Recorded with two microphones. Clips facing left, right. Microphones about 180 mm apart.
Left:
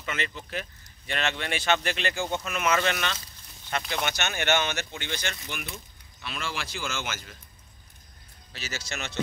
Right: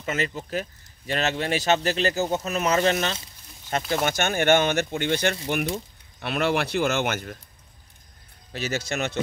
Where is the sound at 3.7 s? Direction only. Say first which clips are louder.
Right 6 dB; 40° right (ahead or behind); by 7.4 s 60° right (ahead or behind).